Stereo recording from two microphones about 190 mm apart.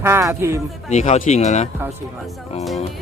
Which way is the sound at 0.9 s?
35° left (ahead or behind).